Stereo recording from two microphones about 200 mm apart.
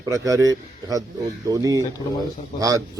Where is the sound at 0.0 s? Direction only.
15° right (ahead or behind).